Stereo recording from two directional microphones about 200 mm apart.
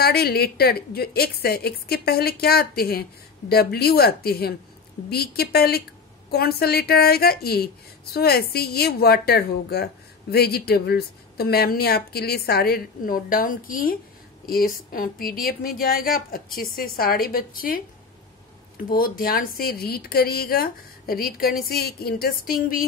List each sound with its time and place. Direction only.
0.0 s a woman's voice: 50° left (ahead or behind)
18.9 s a woman's voice: 45° left (ahead or behind)